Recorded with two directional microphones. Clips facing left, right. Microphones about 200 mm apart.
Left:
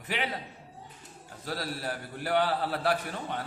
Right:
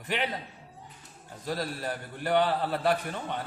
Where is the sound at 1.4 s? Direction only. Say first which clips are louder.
Right 2 dB; 5° left (ahead or behind).